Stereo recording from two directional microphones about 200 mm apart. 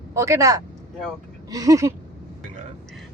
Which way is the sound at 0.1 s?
15° right (ahead or behind).